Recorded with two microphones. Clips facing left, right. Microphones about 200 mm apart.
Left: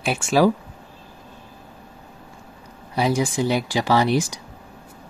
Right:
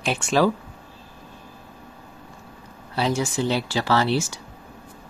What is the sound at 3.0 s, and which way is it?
Speech, 10° left (ahead or behind).